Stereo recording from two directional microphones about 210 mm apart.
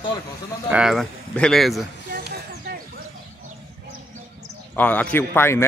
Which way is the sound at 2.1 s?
40° right (ahead or behind).